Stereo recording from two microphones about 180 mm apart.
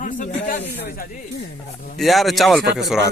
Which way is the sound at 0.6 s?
60° left (ahead or behind).